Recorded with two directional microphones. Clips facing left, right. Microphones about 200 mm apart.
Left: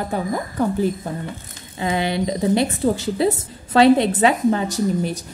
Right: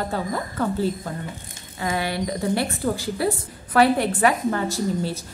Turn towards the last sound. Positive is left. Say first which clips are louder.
# left 3 dB
turn(degrees=20)  # may be behind; listen again after turning